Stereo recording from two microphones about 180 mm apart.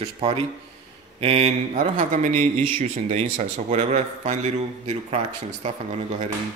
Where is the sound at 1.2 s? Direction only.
35° right (ahead or behind).